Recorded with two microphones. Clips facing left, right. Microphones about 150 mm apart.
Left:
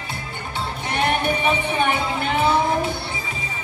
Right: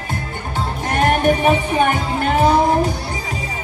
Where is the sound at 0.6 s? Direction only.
45° right (ahead or behind).